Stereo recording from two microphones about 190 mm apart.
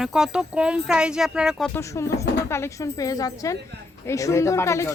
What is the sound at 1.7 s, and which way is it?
Speech, 15° left (ahead or behind).